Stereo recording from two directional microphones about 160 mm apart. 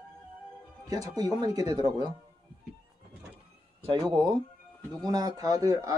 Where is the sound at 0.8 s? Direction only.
20° right (ahead or behind).